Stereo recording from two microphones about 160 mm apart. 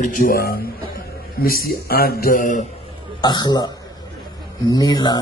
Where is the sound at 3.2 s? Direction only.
30° left (ahead or behind).